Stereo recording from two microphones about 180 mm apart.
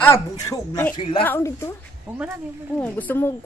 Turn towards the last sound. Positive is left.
turn(degrees=10)  # may be behind; listen again after turning